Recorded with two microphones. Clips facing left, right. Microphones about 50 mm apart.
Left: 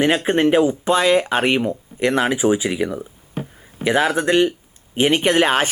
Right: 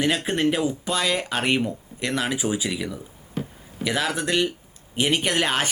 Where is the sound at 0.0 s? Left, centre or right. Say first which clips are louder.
Left 6 dB; left.